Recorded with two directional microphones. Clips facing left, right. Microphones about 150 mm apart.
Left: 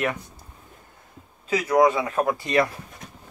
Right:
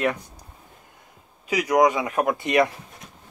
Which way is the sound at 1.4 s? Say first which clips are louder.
Even; 15° right (ahead or behind).